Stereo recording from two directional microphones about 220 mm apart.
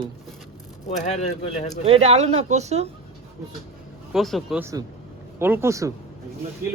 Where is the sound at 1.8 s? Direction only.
30° right (ahead or behind).